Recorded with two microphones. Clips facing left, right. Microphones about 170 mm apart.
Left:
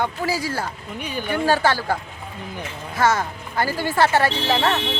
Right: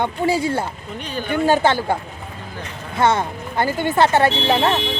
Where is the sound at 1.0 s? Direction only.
10° left (ahead or behind).